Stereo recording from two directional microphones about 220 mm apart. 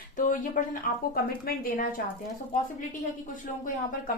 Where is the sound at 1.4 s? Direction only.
40° left (ahead or behind).